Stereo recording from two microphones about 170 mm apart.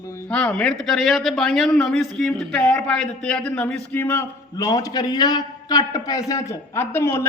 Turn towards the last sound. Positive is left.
turn(degrees=15)  # may be behind; listen again after turning